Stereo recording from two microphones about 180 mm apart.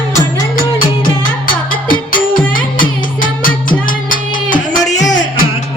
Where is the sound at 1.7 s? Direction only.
50° left (ahead or behind).